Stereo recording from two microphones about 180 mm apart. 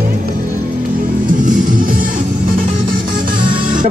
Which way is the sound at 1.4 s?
45° right (ahead or behind).